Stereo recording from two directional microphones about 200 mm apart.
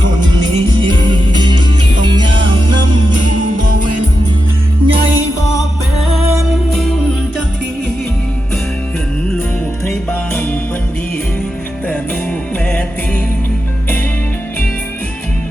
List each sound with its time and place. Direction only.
1.0 s music: 25° right (ahead or behind)
4.9 s music: 25° right (ahead or behind)
6.7 s music: centre (ahead or behind)
9.8 s music: 10° left (ahead or behind)